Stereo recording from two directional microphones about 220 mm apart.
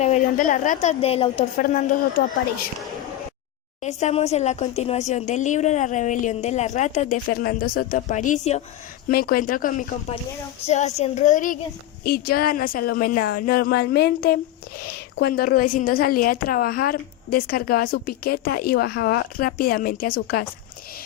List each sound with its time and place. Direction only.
0.0 s speech: 35° left (ahead or behind)
1.6 s speech: 40° left (ahead or behind)
3.8 s speech: 30° left (ahead or behind)